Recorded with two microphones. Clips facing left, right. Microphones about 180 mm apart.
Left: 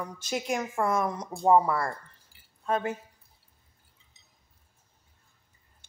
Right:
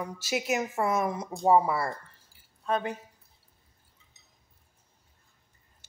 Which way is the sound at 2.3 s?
70° left (ahead or behind).